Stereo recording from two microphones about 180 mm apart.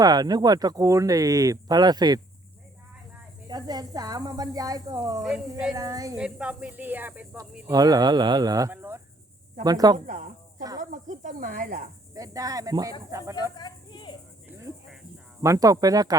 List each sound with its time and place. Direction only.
0.0 s speech: 20° right (ahead or behind)
3.5 s speech: 20° right (ahead or behind)
5.2 s speech: 5° right (ahead or behind)
5.7 s speech: 20° right (ahead or behind)
6.1 s speech: 5° right (ahead or behind)
7.7 s speech: 20° right (ahead or behind)
10.1 s speech: 45° right (ahead or behind)
10.8 s cricket: 45° right (ahead or behind)
12.1 s speech: 20° right (ahead or behind)
13.6 s a sound: 25° left (ahead or behind)
15.4 s speech: 20° right (ahead or behind)